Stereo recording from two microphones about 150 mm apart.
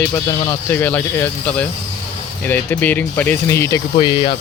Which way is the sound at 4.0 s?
30° left (ahead or behind).